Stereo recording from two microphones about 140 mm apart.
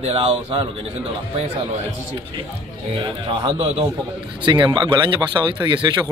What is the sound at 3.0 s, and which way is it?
Speech, 35° right (ahead or behind).